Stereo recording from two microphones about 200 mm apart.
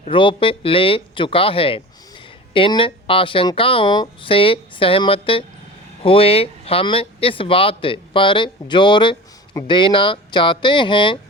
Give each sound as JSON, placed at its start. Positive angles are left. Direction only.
{"t": 0.0, "sound": "speech", "side_deg": 25}